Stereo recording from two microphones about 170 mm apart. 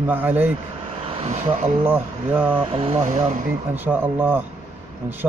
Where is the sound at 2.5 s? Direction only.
35° right (ahead or behind).